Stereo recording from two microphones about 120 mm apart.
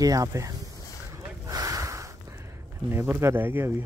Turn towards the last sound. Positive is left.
turn(degrees=-20)  # may be behind; listen again after turning